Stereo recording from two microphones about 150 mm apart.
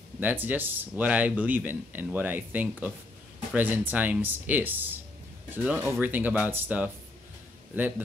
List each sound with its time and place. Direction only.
0.2 s speech: 10° right (ahead or behind)